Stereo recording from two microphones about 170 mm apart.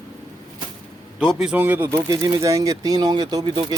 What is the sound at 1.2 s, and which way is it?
Speech, centre (ahead or behind).